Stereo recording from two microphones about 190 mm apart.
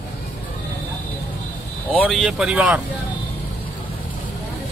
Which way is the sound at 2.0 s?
Centre (ahead or behind).